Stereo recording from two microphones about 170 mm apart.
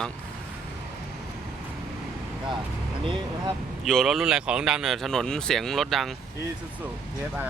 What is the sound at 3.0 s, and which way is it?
Speech, 30° right (ahead or behind).